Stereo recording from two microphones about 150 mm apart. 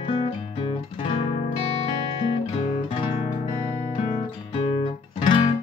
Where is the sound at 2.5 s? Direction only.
35° left (ahead or behind).